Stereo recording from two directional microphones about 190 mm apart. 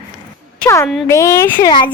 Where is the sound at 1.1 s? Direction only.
15° left (ahead or behind).